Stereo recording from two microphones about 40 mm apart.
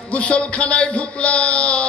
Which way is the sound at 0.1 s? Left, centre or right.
Left.